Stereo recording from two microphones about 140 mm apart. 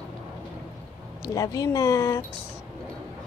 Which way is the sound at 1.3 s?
25° left (ahead or behind).